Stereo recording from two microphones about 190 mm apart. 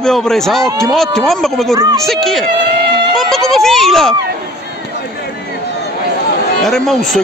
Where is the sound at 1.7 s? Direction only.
15° right (ahead or behind).